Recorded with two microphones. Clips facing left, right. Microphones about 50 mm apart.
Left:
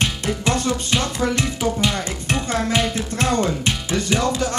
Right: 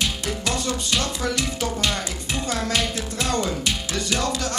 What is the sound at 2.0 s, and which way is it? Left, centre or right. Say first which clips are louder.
Speech: left 4 dB; left.